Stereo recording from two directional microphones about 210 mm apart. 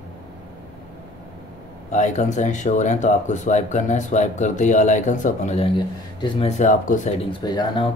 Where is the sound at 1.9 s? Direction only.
35° left (ahead or behind).